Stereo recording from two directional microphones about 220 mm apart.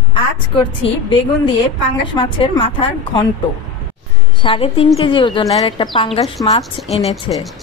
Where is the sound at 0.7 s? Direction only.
20° left (ahead or behind).